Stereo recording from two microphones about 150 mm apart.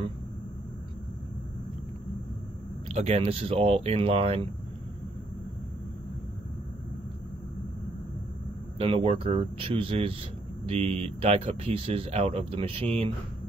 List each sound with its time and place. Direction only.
2.9 s speech: 40° right (ahead or behind)
8.7 s speech: 40° right (ahead or behind)